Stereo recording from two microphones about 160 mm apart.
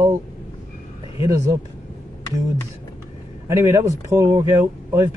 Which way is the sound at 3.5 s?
20° right (ahead or behind).